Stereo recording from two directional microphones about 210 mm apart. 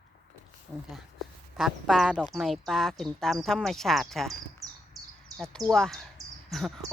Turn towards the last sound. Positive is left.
turn(degrees=0)  # may be behind; listen again after turning